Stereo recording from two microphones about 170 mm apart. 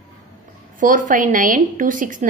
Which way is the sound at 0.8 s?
50° right (ahead or behind).